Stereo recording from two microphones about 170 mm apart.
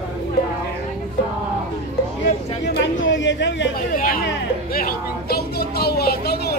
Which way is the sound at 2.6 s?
85° left.